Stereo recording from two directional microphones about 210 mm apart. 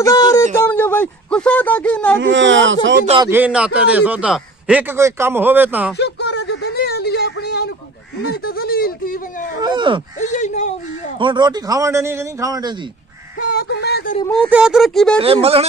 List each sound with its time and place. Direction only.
0.0 s a sound: 15° left (ahead or behind)
2.1 s speech: 60° right (ahead or behind)
3.3 s a man's voice: 10° right (ahead or behind)
5.9 s a sound: 55° left (ahead or behind)
8.2 s speech: 45° left (ahead or behind)
9.6 s speech: 20° right (ahead or behind)
10.1 s speech: 35° left (ahead or behind)
11.1 s a man's voice: 20° right (ahead or behind)
13.4 s speech: 50° left (ahead or behind)
14.2 s speech: 5° left (ahead or behind)
14.5 s speech: 5° right (ahead or behind)
15.1 s speech: 25° right (ahead or behind)